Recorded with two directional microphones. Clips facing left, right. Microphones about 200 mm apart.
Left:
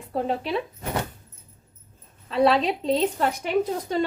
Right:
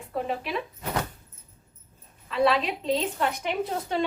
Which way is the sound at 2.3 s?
30° left (ahead or behind).